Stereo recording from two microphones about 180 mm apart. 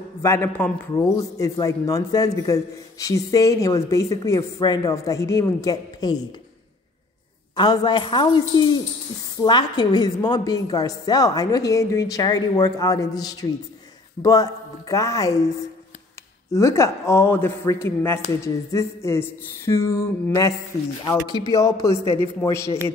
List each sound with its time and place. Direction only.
0.2 s a man's voice: 15° left (ahead or behind)
7.5 s a man's voice: 25° left (ahead or behind)
16.5 s a man's voice: 15° left (ahead or behind)